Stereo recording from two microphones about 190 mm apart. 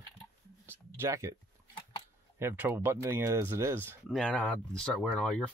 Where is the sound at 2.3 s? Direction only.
10° right (ahead or behind).